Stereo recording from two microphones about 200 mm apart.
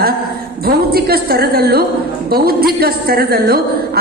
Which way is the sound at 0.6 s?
50° right (ahead or behind).